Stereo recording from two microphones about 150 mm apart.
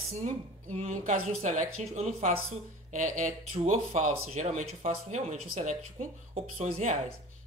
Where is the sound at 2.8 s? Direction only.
55° right (ahead or behind).